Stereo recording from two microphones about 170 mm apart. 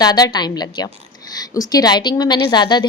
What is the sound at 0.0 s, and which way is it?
A woman's voice, 25° left (ahead or behind).